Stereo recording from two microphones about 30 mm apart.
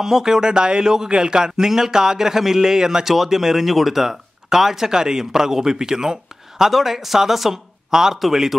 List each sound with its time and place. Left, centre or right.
0.0 s a man's voice: centre